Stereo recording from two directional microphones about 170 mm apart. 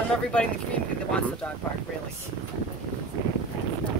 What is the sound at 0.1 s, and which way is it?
Speech, 5° left (ahead or behind).